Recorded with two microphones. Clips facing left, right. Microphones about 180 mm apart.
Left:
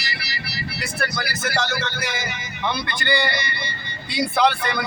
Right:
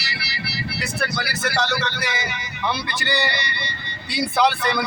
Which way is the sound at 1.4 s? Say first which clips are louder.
Right 2 dB; 45° left (ahead or behind).